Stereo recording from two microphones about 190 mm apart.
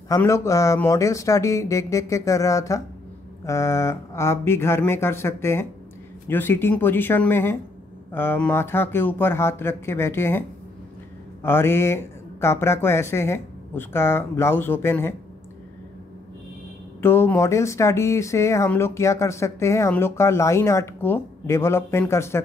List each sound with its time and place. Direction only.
0.1 s speech: 15° left (ahead or behind)
11.4 s speech: 10° left (ahead or behind)
17.0 s speech: 10° left (ahead or behind)